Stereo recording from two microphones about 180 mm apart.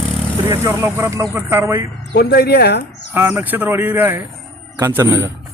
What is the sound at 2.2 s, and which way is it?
Speech, 60° left (ahead or behind).